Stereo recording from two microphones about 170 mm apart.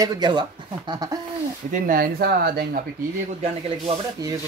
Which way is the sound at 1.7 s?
55° right (ahead or behind).